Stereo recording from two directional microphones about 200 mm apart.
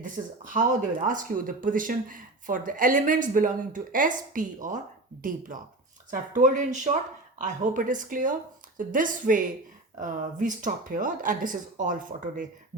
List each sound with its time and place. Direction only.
0.0 s speech: 40° right (ahead or behind)